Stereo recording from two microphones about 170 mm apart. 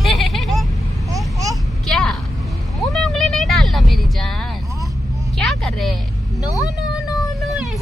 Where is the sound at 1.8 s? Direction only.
5° left (ahead or behind).